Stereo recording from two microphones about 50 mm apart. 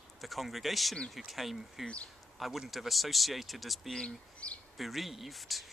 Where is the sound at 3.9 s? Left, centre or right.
Left.